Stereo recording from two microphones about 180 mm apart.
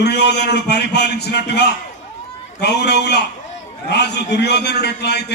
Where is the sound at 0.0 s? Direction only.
70° left (ahead or behind).